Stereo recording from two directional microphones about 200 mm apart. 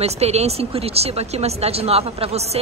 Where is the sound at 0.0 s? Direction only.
30° right (ahead or behind).